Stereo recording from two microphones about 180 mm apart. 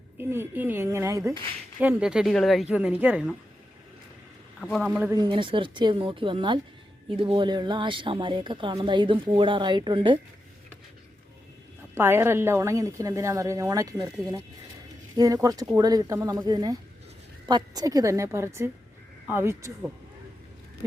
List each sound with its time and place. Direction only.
0.2 s a woman's voice: 15° right (ahead or behind)
4.6 s a woman's voice: centre (ahead or behind)
5.1 s speech: 25° right (ahead or behind)
11.9 s a woman's voice: 15° right (ahead or behind)